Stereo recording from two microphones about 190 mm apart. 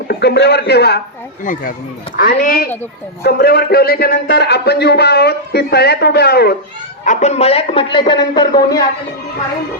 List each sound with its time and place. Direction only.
0.1 s speech: 60° left (ahead or behind)
2.1 s a woman's voice: 50° left (ahead or behind)
7.0 s speech: 40° left (ahead or behind); by 8.8 s 20° left (ahead or behind)